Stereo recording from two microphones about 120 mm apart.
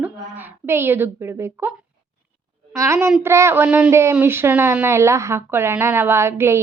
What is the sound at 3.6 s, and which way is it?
Speech, 10° right (ahead or behind).